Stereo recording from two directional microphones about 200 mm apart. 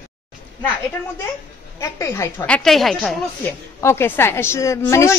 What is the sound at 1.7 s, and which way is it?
A woman's voice, 15° left (ahead or behind).